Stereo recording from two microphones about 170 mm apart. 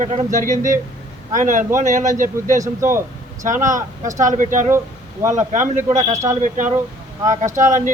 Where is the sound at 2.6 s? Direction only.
15° right (ahead or behind).